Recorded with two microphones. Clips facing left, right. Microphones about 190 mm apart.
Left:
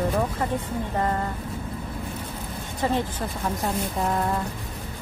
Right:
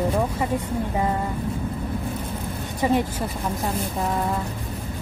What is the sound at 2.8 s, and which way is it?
Speech, 15° right (ahead or behind).